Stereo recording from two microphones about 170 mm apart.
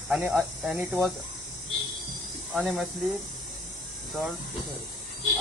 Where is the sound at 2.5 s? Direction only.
Centre (ahead or behind).